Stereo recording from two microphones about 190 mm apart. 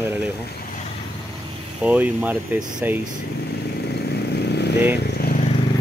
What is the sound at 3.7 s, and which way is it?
Vehicle, 60° left (ahead or behind).